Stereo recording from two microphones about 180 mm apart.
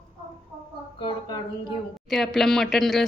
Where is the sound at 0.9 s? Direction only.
25° left (ahead or behind).